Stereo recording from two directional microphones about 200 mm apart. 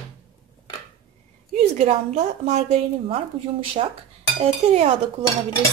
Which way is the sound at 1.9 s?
30° right (ahead or behind).